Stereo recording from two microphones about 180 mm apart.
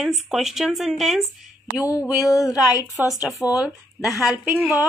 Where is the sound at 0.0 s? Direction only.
Centre (ahead or behind).